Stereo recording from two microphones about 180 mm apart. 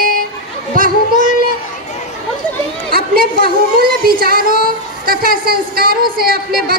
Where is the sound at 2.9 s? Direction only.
55° right (ahead or behind).